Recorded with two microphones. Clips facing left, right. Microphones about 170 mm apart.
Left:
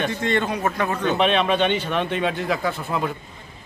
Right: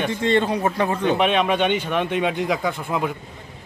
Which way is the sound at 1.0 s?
10° right (ahead or behind).